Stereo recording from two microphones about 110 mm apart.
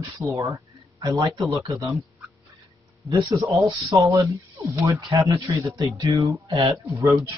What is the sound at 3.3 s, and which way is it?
Speech, 30° right (ahead or behind).